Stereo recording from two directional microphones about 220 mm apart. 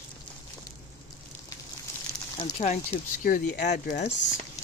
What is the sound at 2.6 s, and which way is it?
Speech, 35° left (ahead or behind).